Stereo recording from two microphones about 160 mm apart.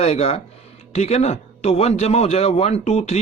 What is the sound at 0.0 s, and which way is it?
Speech, 40° left (ahead or behind).